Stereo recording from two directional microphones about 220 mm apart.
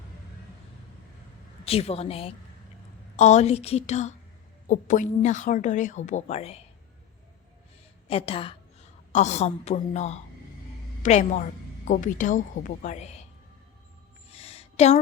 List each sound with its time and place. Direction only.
1.6 s a woman's voice: 25° left (ahead or behind)
8.0 s a woman's voice: 25° left (ahead or behind)
14.3 s a sound: 25° left (ahead or behind)